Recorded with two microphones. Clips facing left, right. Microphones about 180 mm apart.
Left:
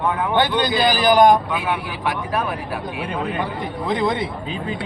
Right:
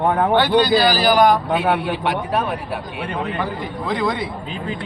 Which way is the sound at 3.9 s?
20° left (ahead or behind).